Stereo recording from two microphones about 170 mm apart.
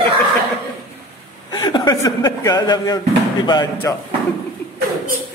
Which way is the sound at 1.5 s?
25° left (ahead or behind).